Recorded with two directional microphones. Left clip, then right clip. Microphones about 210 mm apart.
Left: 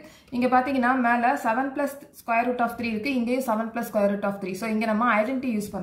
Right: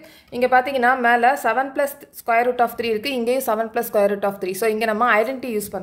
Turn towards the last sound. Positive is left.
turn(degrees=-50)  # may be behind; listen again after turning